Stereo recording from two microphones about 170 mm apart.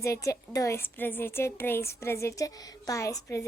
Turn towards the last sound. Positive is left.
turn(degrees=20)  # may be behind; listen again after turning